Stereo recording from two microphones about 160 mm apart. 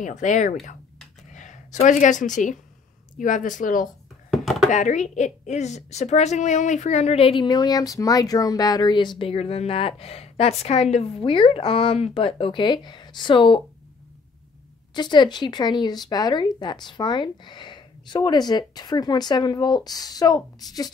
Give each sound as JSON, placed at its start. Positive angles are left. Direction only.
{"t": 0.0, "sound": "a woman's voice", "side_deg": 50}
{"t": 4.3, "sound": "a sound", "side_deg": 0}
{"t": 4.6, "sound": "a woman's voice", "side_deg": 50}
{"t": 15.0, "sound": "speech", "side_deg": 25}